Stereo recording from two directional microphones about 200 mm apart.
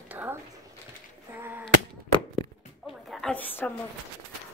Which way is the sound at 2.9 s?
Centre (ahead or behind).